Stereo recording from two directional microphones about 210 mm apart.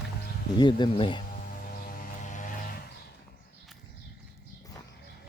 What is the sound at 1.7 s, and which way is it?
Music, 40° left (ahead or behind).